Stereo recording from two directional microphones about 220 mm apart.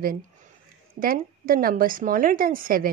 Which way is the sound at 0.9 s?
40° right (ahead or behind).